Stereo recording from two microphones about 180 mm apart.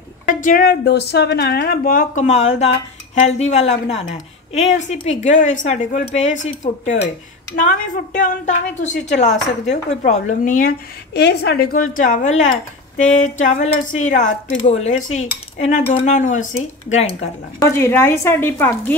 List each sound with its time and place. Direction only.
0.3 s a woman's voice: 50° left (ahead or behind)
17.6 s a woman's voice: 15° left (ahead or behind)